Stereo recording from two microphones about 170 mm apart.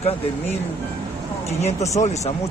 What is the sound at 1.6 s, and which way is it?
Speech, 40° left (ahead or behind).